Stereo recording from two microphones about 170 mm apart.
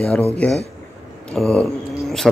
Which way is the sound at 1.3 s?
Centre (ahead or behind).